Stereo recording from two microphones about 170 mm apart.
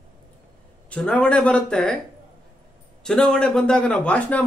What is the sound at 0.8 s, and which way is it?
A man's voice, 5° left (ahead or behind).